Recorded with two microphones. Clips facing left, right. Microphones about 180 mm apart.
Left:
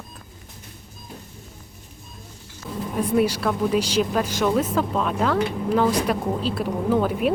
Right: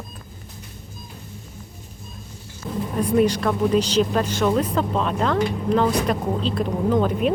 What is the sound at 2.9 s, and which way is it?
Speech, 5° left (ahead or behind).